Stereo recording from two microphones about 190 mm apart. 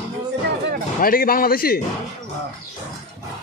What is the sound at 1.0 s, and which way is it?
Speech, 50° left (ahead or behind).